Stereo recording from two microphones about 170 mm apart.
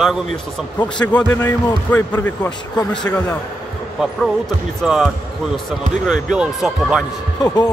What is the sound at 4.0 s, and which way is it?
Speech, centre (ahead or behind).